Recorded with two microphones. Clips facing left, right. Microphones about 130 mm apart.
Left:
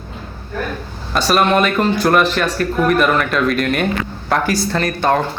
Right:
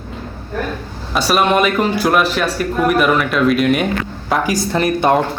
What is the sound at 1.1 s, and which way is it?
A man's voice, 5° right (ahead or behind).